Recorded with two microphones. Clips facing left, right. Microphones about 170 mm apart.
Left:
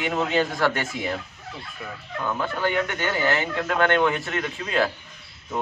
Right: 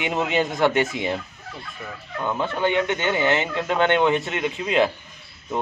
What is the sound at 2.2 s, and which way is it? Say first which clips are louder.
Speech: right 2 dB; 20° right (ahead or behind).